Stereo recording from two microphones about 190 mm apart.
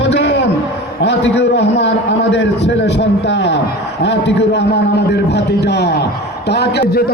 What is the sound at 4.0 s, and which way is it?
A man's voice, 65° left (ahead or behind).